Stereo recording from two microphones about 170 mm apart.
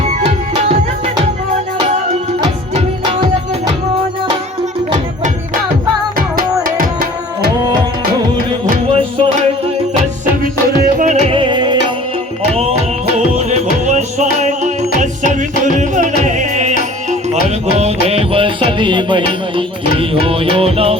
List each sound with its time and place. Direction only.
0.1 s tabla: 40° right (ahead or behind)
6.1 s music: 55° right (ahead or behind)
8.9 s music: 35° right (ahead or behind)
10.4 s music: 60° right (ahead or behind)
11.3 s music: 30° right (ahead or behind)
13.1 s music: 40° right (ahead or behind)
20.2 s music: 35° right (ahead or behind)